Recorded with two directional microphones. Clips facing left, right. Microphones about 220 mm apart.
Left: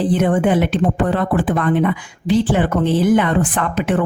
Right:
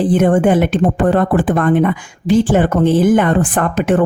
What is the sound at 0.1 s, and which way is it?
A woman's voice, 50° right (ahead or behind).